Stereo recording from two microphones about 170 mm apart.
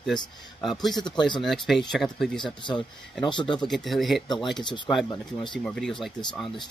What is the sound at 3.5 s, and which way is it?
Speech, centre (ahead or behind).